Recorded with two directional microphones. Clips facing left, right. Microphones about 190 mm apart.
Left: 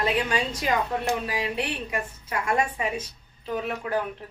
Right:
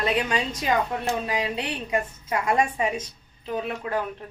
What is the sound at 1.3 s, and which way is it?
A woman's voice, 20° right (ahead or behind).